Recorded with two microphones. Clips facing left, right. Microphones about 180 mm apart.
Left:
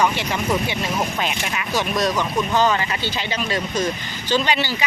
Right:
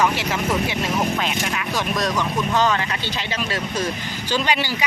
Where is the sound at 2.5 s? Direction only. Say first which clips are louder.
Left 1 dB; centre (ahead or behind).